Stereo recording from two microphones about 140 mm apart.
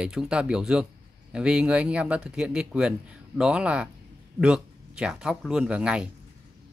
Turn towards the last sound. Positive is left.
turn(degrees=-5)  # may be behind; listen again after turning